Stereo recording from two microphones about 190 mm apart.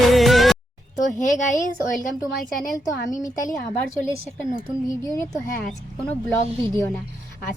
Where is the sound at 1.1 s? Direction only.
40° left (ahead or behind).